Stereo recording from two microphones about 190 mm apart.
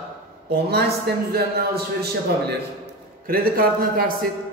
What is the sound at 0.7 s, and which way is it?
Speech, 60° right (ahead or behind).